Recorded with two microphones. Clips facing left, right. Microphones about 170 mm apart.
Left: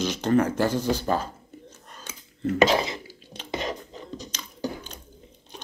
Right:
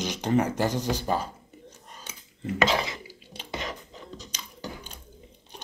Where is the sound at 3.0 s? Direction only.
10° right (ahead or behind).